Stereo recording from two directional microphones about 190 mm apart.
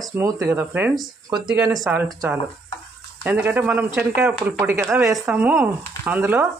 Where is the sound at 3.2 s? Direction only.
10° right (ahead or behind).